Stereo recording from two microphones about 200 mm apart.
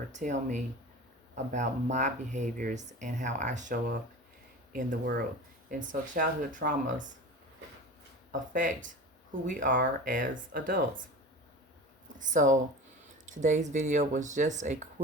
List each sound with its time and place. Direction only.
0.1 s speech: 35° right (ahead or behind)
8.3 s speech: 40° right (ahead or behind)
12.2 s speech: 40° right (ahead or behind)